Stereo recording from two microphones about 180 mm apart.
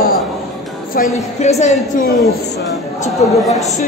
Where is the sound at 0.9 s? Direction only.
50° left (ahead or behind).